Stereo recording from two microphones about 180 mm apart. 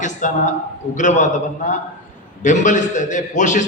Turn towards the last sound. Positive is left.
turn(degrees=45)  # may be behind; listen again after turning